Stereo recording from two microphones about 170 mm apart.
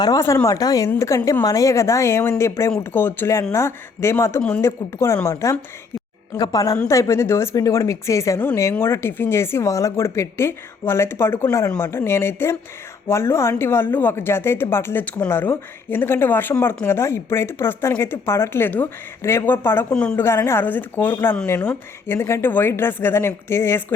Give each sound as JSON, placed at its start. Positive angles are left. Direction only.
{"t": 0.0, "sound": "speech", "side_deg": 20}